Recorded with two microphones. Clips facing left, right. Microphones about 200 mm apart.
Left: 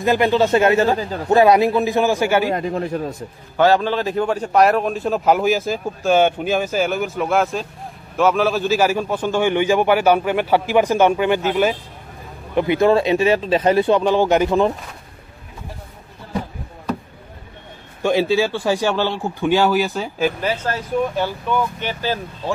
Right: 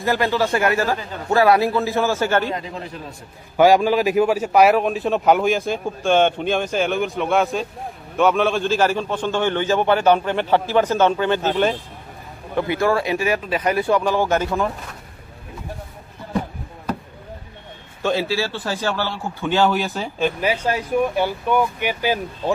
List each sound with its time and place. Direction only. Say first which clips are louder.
0.0 s a man's voice: left 4 dB; 15° left (ahead or behind)
2.5 s a man's voice: left 8 dB; 55° left (ahead or behind)
3.5 s a man's voice: right 2 dB; 10° right (ahead or behind); by 11.4 s 15° left (ahead or behind)
12.5 s speech: left 4 dB; 20° left (ahead or behind)
18.0 s a man's voice: left 5 dB; 15° left (ahead or behind)
20.3 s speech: right 1 dB; 15° right (ahead or behind)